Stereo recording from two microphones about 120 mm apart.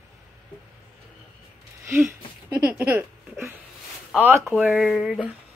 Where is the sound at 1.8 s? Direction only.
20° right (ahead or behind).